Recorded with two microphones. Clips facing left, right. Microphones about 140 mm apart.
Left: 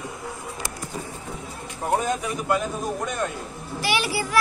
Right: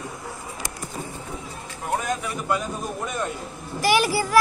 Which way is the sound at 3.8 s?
45° right (ahead or behind).